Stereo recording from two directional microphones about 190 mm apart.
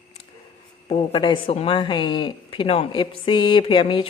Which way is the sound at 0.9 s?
30° left (ahead or behind).